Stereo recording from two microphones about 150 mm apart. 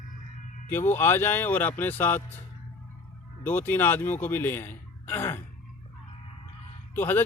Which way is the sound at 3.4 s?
15° left (ahead or behind).